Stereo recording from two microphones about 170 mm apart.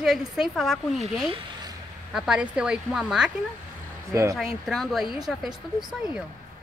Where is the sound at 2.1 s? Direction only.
5° right (ahead or behind).